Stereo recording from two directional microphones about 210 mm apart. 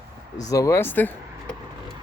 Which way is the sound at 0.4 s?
15° left (ahead or behind).